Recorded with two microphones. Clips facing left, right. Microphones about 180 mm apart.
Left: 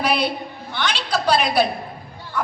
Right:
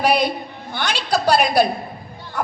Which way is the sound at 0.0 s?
45° right (ahead or behind).